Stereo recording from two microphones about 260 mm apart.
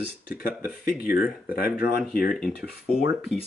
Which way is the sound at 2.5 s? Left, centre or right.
Left.